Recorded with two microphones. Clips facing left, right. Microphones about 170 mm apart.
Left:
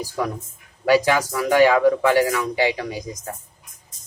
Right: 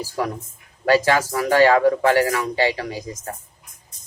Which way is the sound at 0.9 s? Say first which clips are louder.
Even; 15° left (ahead or behind).